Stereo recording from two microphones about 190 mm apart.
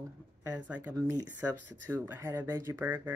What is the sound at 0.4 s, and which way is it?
Speech, 10° right (ahead or behind).